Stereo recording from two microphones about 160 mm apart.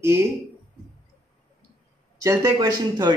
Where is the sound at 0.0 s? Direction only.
15° right (ahead or behind).